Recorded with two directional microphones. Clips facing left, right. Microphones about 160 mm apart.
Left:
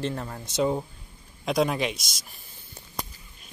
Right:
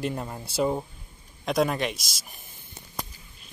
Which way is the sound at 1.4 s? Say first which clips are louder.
Even; centre (ahead or behind).